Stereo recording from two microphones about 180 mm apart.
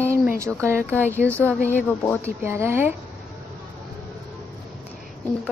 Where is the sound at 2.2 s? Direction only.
15° right (ahead or behind).